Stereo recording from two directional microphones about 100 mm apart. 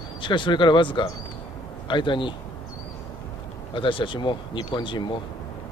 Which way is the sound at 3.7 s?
60° left (ahead or behind).